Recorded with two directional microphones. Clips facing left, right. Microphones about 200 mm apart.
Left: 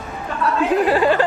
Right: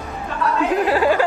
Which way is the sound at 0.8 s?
10° right (ahead or behind).